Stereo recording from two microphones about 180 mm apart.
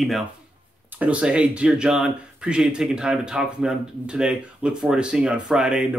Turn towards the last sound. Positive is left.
turn(degrees=-5)  # may be behind; listen again after turning